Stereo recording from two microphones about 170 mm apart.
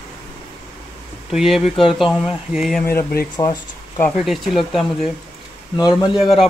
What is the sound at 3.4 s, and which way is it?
Speech, 20° left (ahead or behind).